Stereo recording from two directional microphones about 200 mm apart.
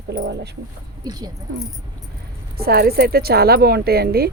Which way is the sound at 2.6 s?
50° right (ahead or behind).